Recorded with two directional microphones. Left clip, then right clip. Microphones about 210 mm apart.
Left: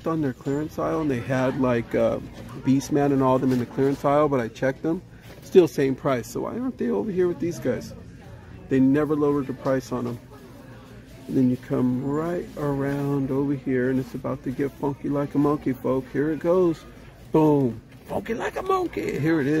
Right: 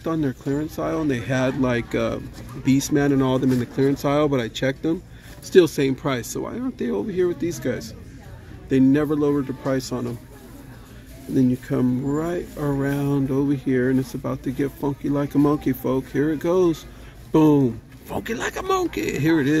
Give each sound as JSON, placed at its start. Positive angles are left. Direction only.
{"t": 0.0, "sound": "speech", "side_deg": -5}
{"t": 11.3, "sound": "speech", "side_deg": -5}